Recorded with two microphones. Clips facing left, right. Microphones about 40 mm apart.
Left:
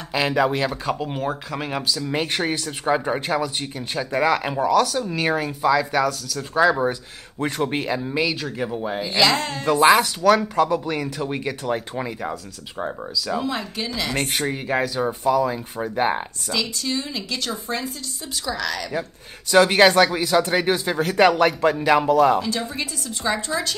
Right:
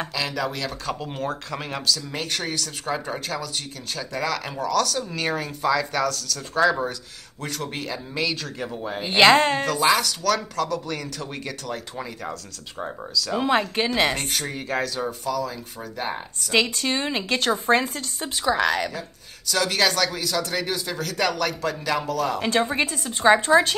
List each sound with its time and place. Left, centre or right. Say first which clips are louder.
0.1 s speech: left 7 dB; left
0.7 s speech: left 5 dB; centre
6.9 s speech: left 7 dB; left; by 9.0 s centre
9.0 s speech: right 5 dB; right
9.7 s speech: left 5 dB; left; by 13.2 s centre
13.5 s speech: right 6 dB; right
14.1 s speech: left 4 dB; left
14.4 s speech: left 4 dB; centre
15.0 s speech: left 7 dB; left
16.4 s a woman's voice: right 5 dB; right
18.4 s speech: right 5 dB; right
18.9 s speech: left 7 dB; left
22.4 s speech: right 4 dB; right